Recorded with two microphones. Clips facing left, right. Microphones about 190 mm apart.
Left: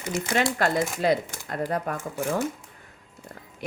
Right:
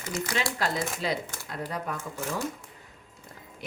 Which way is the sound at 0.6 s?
55° left (ahead or behind).